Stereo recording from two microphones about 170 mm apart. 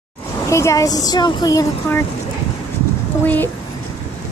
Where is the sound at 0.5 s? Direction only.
15° left (ahead or behind).